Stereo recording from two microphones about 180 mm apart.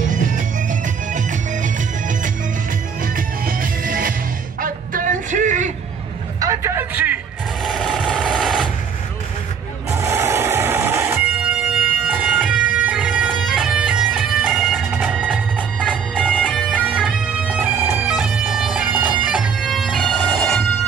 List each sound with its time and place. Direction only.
0.1 s music: 45° right (ahead or behind)
4.6 s a sound: 50° right (ahead or behind)
6.4 s vehicle: 15° right (ahead or behind)
7.6 s a sound: centre (ahead or behind)
9.8 s music: 15° right (ahead or behind)
15.5 s music: 5° left (ahead or behind)
16.3 s bagpipes: 5° left (ahead or behind)
16.8 s bagpipes: 5° right (ahead or behind)